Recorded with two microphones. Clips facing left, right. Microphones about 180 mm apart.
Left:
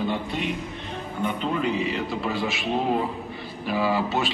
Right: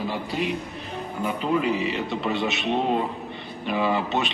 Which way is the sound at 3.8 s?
20° right (ahead or behind).